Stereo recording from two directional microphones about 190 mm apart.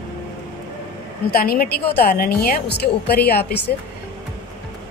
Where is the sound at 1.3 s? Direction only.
50° left (ahead or behind).